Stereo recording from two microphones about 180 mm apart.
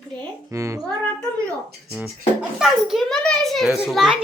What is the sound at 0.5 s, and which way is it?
Speech, 15° right (ahead or behind).